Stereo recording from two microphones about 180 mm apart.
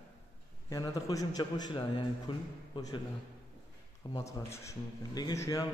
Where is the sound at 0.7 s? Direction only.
20° left (ahead or behind).